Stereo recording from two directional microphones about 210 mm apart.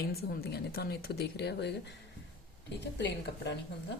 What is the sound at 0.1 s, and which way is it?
A woman's voice, 50° left (ahead or behind).